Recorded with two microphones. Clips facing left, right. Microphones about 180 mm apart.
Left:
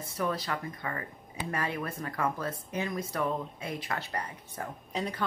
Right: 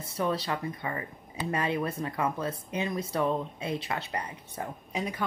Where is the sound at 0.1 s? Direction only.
25° right (ahead or behind).